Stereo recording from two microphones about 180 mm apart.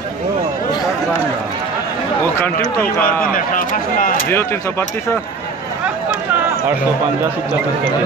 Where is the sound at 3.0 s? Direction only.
50° left (ahead or behind).